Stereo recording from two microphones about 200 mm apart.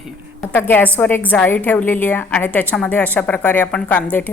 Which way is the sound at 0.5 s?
10° left (ahead or behind).